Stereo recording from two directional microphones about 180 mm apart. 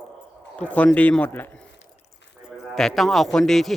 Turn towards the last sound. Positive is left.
turn(degrees=0)  # may be behind; listen again after turning